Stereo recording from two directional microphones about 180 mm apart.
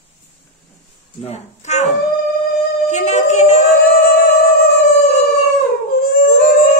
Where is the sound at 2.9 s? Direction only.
40° left (ahead or behind).